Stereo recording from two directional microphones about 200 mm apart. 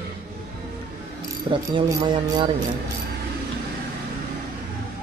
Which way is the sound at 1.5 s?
25° right (ahead or behind).